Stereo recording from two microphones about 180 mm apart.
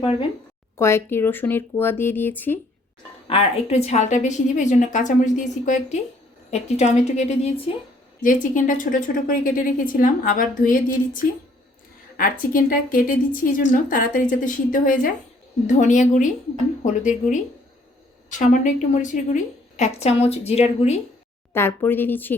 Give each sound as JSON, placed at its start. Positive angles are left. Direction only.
{"t": 0.0, "sound": "a woman's voice", "side_deg": 30}
{"t": 0.8, "sound": "speech", "side_deg": 15}
{"t": 3.2, "sound": "a woman's voice", "side_deg": 35}
{"t": 21.5, "sound": "speech", "side_deg": 15}